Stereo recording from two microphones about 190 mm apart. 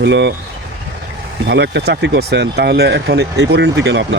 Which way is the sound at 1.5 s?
65° right (ahead or behind).